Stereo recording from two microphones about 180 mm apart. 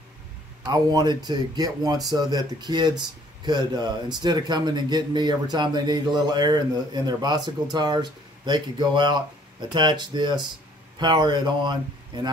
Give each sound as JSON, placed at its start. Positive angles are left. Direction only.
{"t": 0.7, "sound": "speech", "side_deg": -25}